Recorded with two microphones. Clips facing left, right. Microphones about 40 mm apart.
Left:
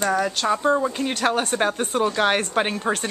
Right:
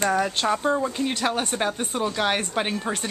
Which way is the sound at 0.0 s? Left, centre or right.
Centre.